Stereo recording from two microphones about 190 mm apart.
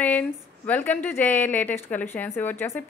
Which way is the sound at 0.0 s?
10° left (ahead or behind).